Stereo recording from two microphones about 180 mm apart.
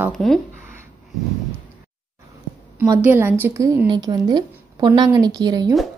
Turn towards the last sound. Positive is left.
turn(degrees=-20)  # may be behind; listen again after turning